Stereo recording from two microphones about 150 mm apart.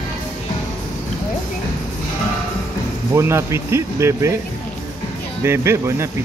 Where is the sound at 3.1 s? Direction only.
15° right (ahead or behind).